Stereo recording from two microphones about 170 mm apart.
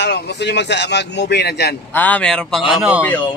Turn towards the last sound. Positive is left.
turn(degrees=-5)  # may be behind; listen again after turning